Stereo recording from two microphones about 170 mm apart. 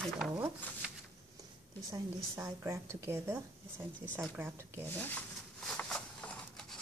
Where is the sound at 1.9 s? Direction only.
15° right (ahead or behind).